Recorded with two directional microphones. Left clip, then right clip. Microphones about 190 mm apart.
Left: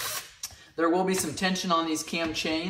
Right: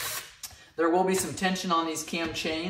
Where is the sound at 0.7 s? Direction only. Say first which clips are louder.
Right 1 dB; 15° left (ahead or behind).